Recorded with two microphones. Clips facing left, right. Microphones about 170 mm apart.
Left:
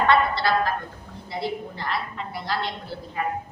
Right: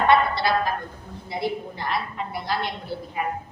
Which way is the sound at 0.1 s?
15° right (ahead or behind).